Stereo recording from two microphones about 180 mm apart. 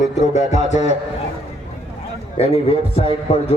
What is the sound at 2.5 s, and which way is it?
A man's voice, 35° left (ahead or behind).